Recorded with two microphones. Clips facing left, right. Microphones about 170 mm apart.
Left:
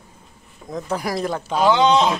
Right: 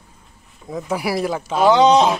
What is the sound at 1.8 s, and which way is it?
Speech, 40° right (ahead or behind).